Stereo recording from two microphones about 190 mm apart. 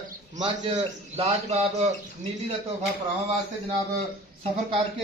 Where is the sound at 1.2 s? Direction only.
35° right (ahead or behind).